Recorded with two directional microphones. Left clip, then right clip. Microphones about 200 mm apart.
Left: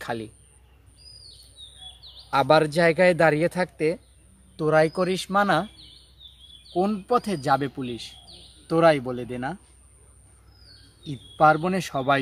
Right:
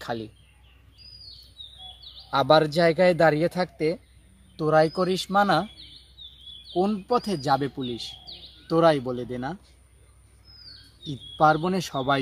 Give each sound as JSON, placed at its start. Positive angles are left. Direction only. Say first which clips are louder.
{"t": 0.0, "sound": "speech", "louder": "left 1 dB", "side_deg": 10}
{"t": 2.3, "sound": "a man's voice", "louder": "even", "side_deg": 5}
{"t": 6.7, "sound": "a man's voice", "louder": "left 1 dB", "side_deg": 5}
{"t": 11.1, "sound": "a man's voice", "louder": "left 2 dB", "side_deg": 10}